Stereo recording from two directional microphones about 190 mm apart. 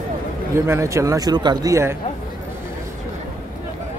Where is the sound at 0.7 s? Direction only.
15° right (ahead or behind).